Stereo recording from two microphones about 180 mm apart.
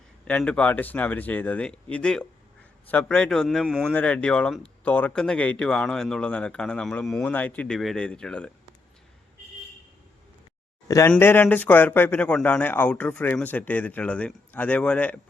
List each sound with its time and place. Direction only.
0.3 s speech: 5° left (ahead or behind)
10.8 s speech: 20° left (ahead or behind)